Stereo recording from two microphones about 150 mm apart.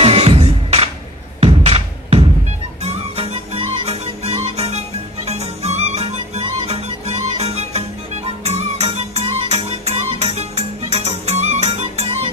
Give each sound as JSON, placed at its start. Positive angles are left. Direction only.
{"t": 0.0, "sound": "music", "side_deg": -40}